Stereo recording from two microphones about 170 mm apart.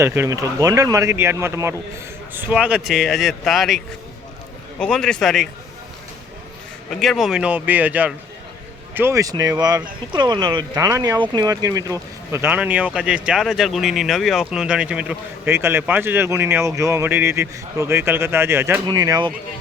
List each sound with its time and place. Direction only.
0.0 s speech: 15° right (ahead or behind); by 3.8 s centre (ahead or behind)
4.8 s speech: 5° left (ahead or behind)
6.9 s speech: centre (ahead or behind); by 19.3 s 20° right (ahead or behind)